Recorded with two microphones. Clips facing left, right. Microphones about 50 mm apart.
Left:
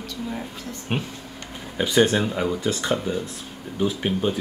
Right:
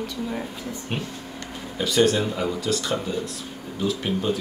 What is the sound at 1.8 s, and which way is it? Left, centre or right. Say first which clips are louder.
Speech: left 1 dB; left.